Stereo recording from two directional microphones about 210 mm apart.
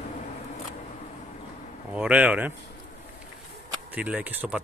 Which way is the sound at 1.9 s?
5° right (ahead or behind).